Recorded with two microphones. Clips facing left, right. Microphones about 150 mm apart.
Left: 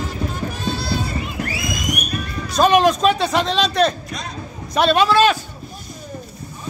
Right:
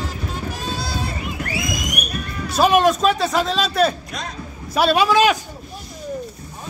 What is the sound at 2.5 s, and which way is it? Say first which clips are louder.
A man's voice: left 1 dB; 5° right (ahead or behind).